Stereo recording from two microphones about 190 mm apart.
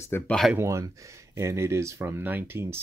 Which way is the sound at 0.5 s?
15° right (ahead or behind).